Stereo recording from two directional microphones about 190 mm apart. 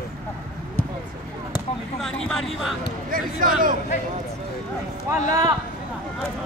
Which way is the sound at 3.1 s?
45° right (ahead or behind).